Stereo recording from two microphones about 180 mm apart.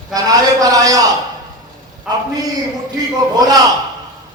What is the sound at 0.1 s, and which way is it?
Speech, 20° right (ahead or behind).